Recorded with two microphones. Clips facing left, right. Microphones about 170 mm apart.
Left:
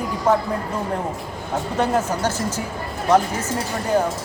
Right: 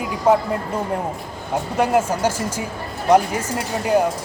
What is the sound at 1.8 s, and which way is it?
Speech, 10° right (ahead or behind).